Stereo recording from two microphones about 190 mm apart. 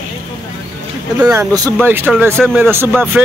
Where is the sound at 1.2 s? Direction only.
15° right (ahead or behind).